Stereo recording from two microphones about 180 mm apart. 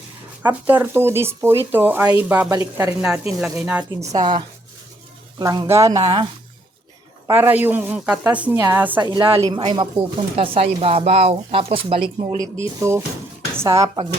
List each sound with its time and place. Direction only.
0.4 s a woman's voice: 10° right (ahead or behind)
4.1 s speech: 25° right (ahead or behind)
6.0 s speech: 30° right (ahead or behind)
7.3 s a woman's voice: 10° right (ahead or behind)
9.0 s speech: 25° right (ahead or behind)
12.4 s a woman's voice: 15° right (ahead or behind)